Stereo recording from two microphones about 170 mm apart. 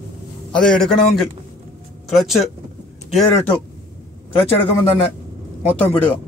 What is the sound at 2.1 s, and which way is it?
Speech, centre (ahead or behind).